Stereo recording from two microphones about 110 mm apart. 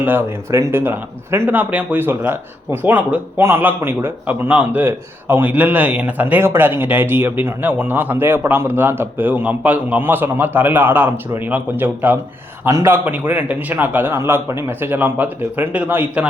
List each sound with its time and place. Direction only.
0.0 s speech: 20° right (ahead or behind)